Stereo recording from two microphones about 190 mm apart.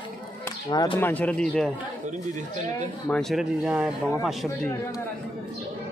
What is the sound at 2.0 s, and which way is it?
Speech, 40° right (ahead or behind).